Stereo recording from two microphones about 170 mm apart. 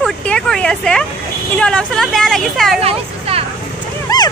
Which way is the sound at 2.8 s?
35° right (ahead or behind).